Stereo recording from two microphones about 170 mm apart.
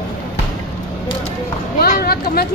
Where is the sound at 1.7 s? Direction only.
60° left (ahead or behind).